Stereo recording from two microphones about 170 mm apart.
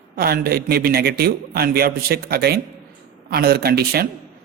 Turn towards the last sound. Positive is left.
turn(degrees=-70)  # may be behind; listen again after turning